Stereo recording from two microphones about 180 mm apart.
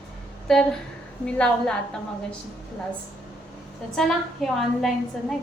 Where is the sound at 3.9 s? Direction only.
Centre (ahead or behind).